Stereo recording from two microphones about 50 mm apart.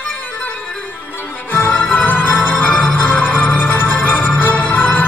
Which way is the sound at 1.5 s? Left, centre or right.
Left.